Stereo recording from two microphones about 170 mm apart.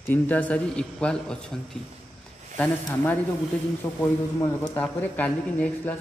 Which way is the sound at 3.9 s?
15° left (ahead or behind).